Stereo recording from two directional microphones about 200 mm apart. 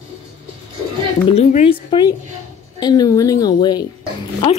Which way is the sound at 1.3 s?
35° left (ahead or behind).